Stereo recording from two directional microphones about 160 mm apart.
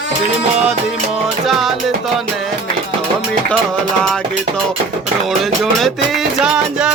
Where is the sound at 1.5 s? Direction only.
Centre (ahead or behind).